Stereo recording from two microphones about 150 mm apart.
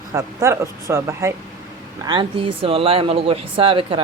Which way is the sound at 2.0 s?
35° right (ahead or behind).